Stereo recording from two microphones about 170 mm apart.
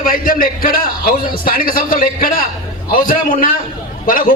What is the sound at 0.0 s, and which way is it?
A man's voice, 55° left (ahead or behind).